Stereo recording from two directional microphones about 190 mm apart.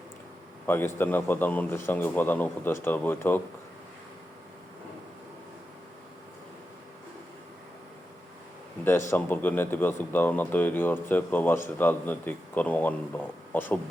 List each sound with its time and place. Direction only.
0.9 s speech: 10° left (ahead or behind)
8.8 s speech: 15° left (ahead or behind)